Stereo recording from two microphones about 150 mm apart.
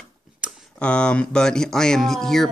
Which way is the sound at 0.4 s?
5° right (ahead or behind).